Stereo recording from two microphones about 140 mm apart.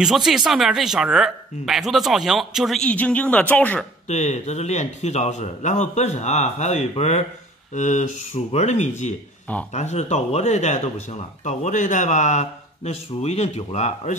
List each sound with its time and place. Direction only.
0.0 s speech: 5° right (ahead or behind)
4.1 s a man's voice: 55° left (ahead or behind)